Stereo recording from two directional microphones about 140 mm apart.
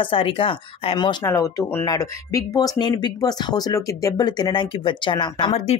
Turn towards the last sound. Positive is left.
turn(degrees=50)  # may be behind; listen again after turning